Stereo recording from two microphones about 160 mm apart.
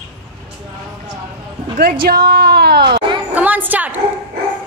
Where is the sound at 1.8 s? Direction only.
70° right (ahead or behind); by 3.0 s 90° right.